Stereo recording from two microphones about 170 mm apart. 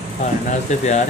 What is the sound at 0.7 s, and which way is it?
Speech, 45° left (ahead or behind).